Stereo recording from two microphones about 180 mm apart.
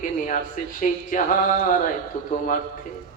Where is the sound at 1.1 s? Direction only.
45° left (ahead or behind).